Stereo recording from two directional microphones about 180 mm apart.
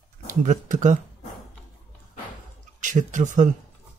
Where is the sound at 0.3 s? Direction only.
45° right (ahead or behind).